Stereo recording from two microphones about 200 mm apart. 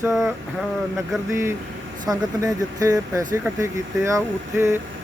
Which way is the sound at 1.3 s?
10° right (ahead or behind).